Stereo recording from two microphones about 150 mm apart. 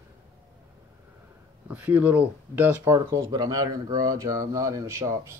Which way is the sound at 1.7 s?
10° right (ahead or behind).